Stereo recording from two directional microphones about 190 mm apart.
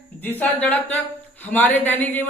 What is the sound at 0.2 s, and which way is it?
Speech, 10° left (ahead or behind).